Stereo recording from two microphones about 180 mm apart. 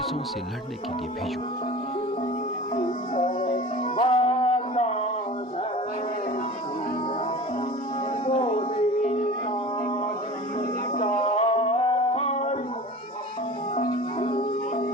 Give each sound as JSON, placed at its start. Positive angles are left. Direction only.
{"t": 3.4, "sound": "music", "side_deg": 30}
{"t": 8.3, "sound": "music", "side_deg": 35}
{"t": 10.9, "sound": "music", "side_deg": 35}
{"t": 14.2, "sound": "music", "side_deg": 30}